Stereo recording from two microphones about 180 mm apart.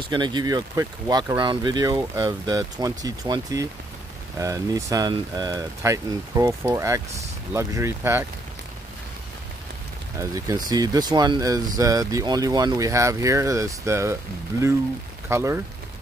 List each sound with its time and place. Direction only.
0.0 s speech: 25° right (ahead or behind)
10.1 s speech: 20° right (ahead or behind)
15.2 s speech: 15° right (ahead or behind)